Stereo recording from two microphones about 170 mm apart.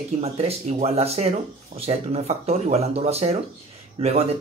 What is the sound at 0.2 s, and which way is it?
Speech, 40° right (ahead or behind).